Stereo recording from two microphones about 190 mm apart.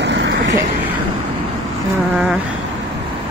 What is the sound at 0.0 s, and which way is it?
Vehicle, 65° right (ahead or behind).